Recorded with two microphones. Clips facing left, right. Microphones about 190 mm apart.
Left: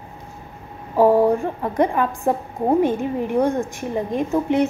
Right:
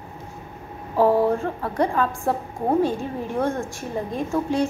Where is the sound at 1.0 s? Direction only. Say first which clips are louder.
Left 3 dB; 15° left (ahead or behind).